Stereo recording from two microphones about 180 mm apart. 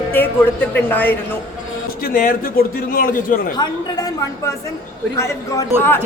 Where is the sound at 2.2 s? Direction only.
55° left (ahead or behind).